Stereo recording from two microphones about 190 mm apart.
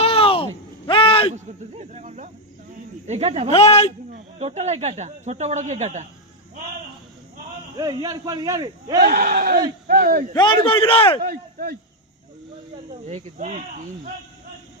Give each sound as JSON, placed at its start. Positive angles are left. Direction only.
{"t": 0.0, "sound": "a sound", "side_deg": 30}
{"t": 1.7, "sound": "speech", "side_deg": -35}
{"t": 3.5, "sound": "speech", "side_deg": 35}
{"t": 4.1, "sound": "speech", "side_deg": -35}
{"t": 7.8, "sound": "a man's voice", "side_deg": -20}
{"t": 9.0, "sound": "a sound", "side_deg": -50}
{"t": 10.3, "sound": "a man's voice", "side_deg": 25}
{"t": 11.2, "sound": "a sound", "side_deg": -50}
{"t": 13.1, "sound": "speech", "side_deg": -35}